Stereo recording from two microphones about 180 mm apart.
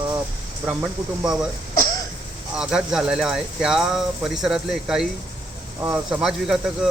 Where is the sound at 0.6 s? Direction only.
10° right (ahead or behind).